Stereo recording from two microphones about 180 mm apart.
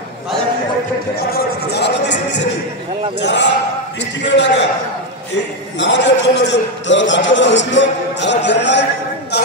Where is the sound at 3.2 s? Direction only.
75° left (ahead or behind).